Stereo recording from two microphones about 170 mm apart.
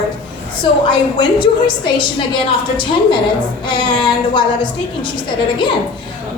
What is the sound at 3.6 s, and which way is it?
A woman's voice, 30° left (ahead or behind).